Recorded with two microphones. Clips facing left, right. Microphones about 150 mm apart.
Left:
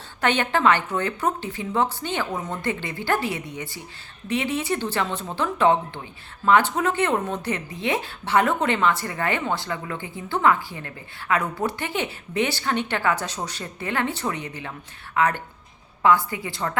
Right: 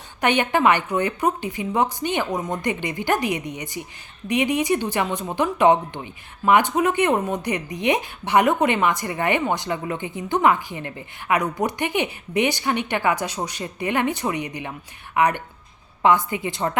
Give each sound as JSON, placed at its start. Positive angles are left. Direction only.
{"t": 0.2, "sound": "a woman's voice", "side_deg": -15}